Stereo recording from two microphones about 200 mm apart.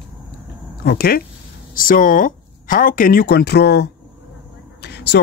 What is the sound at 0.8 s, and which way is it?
Speech, 50° left (ahead or behind).